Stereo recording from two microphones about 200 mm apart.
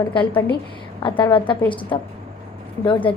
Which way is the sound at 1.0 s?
25° left (ahead or behind).